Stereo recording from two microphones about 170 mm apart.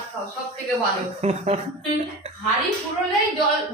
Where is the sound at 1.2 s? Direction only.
40° right (ahead or behind).